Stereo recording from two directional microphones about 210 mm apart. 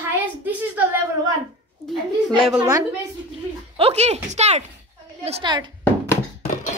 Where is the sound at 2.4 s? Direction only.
5° right (ahead or behind).